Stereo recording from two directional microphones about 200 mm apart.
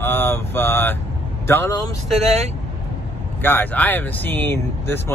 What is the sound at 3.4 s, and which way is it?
Speech, 10° left (ahead or behind).